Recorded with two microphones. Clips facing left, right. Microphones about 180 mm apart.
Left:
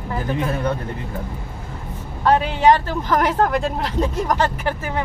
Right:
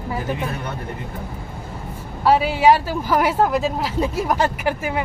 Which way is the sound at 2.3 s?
10° right (ahead or behind).